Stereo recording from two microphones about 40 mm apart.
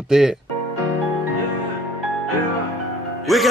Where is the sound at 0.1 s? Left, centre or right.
Centre.